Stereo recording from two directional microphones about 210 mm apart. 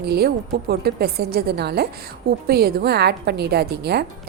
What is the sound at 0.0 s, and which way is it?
A woman's voice, 50° right (ahead or behind).